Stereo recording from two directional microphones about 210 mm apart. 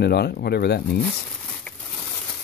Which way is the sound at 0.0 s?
50° left (ahead or behind).